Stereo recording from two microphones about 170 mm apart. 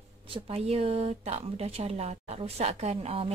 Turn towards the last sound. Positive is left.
turn(degrees=-35)  # may be behind; listen again after turning